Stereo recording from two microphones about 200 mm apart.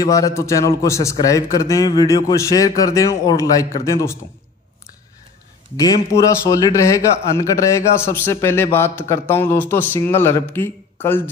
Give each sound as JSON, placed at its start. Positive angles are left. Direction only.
{"t": 0.0, "sound": "a man's voice", "side_deg": 15}
{"t": 6.2, "sound": "a man's voice", "side_deg": 15}